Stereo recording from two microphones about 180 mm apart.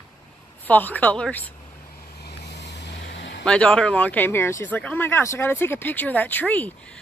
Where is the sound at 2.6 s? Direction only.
70° left (ahead or behind).